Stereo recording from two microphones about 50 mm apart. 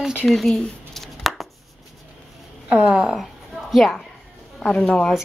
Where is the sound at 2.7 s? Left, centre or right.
Centre.